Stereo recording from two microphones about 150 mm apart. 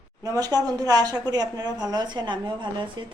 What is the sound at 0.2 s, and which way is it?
Speech, 25° right (ahead or behind).